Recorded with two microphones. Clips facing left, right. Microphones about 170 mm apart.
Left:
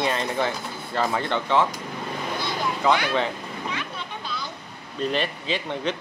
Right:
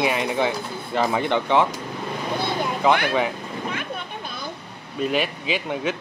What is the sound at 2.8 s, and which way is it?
Speech, 15° right (ahead or behind).